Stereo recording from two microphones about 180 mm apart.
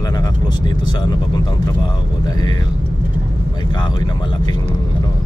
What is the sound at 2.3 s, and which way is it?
Speech, 20° left (ahead or behind).